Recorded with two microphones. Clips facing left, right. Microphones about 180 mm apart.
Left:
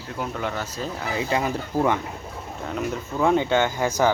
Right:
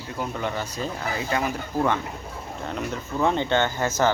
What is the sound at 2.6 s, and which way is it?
Speech, 5° left (ahead or behind).